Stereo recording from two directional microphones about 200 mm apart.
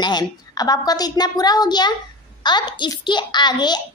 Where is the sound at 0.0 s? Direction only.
20° left (ahead or behind).